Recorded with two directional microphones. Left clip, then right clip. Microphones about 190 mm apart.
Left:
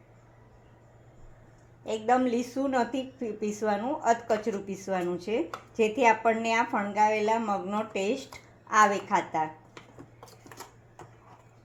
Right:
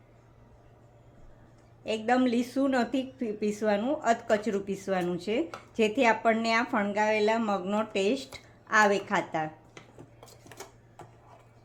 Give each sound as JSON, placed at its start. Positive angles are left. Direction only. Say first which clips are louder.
{"t": 1.8, "sound": "a woman's voice", "louder": "left 1 dB", "side_deg": -25}